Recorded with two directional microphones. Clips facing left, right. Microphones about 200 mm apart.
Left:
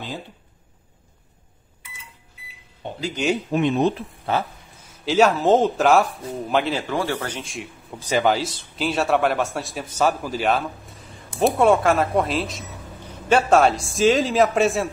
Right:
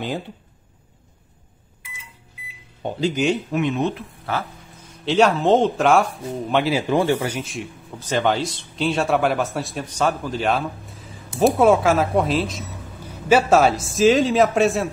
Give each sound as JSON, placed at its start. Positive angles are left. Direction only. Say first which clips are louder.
{"t": 3.2, "sound": "speech", "louder": "right 1 dB", "side_deg": -5}
{"t": 3.5, "sound": "speech", "louder": "left 2 dB", "side_deg": 35}
{"t": 5.0, "sound": "speech", "louder": "even", "side_deg": 0}
{"t": 6.9, "sound": "speech", "louder": "right 6 dB", "side_deg": -20}
{"t": 7.2, "sound": "speech", "louder": "right 4 dB", "side_deg": -5}